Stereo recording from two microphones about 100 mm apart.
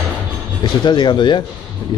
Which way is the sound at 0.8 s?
50° left (ahead or behind).